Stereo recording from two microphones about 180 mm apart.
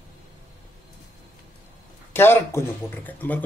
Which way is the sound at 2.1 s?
10° left (ahead or behind).